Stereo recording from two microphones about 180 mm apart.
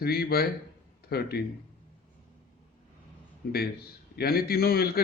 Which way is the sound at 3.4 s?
60° left (ahead or behind).